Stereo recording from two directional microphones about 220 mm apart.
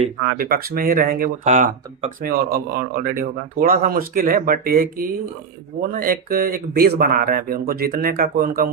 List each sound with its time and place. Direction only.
0.3 s speech: 40° right (ahead or behind)